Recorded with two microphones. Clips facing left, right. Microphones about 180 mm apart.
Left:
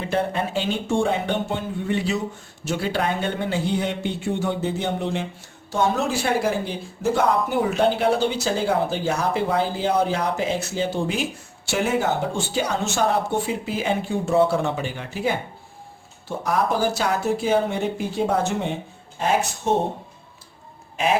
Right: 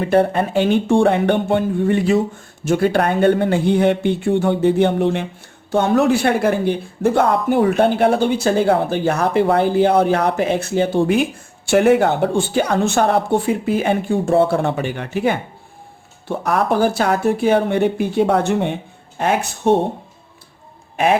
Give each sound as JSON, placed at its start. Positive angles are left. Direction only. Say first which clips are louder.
{"t": 0.0, "sound": "speech", "louder": "right 8 dB", "side_deg": -55}
{"t": 20.9, "sound": "speech", "louder": "right 6 dB", "side_deg": -60}